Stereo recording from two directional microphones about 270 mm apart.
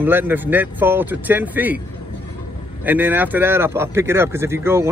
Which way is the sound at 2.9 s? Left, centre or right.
Centre.